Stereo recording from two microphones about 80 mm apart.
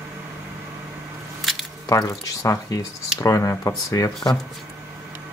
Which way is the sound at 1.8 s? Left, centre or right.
Left.